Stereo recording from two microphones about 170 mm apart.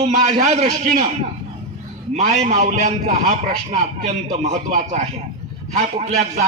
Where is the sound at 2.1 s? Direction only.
40° right (ahead or behind).